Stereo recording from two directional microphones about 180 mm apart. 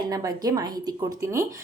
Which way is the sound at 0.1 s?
20° right (ahead or behind).